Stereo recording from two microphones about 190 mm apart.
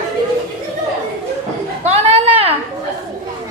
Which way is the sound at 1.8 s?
30° right (ahead or behind).